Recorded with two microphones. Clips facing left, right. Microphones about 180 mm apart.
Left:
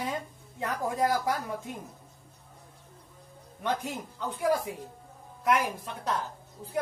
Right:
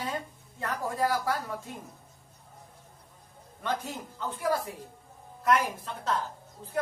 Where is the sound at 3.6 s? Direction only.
15° left (ahead or behind).